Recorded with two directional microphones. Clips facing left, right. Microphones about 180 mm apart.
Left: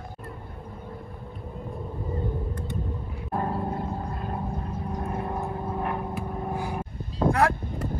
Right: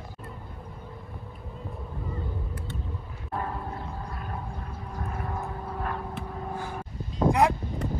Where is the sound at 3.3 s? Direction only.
30° left (ahead or behind).